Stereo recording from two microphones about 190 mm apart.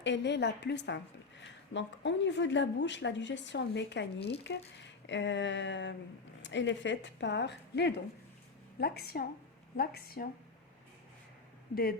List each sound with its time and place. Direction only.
0.0 s a woman's voice: 65° left (ahead or behind); by 10.2 s 50° left (ahead or behind)
11.7 s a woman's voice: 50° left (ahead or behind)